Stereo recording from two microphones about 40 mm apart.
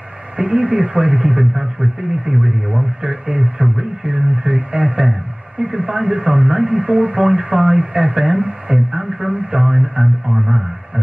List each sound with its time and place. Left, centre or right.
0.5 s speech: right
1.5 s speech: centre
4.1 s speech: right
8.6 s speech: centre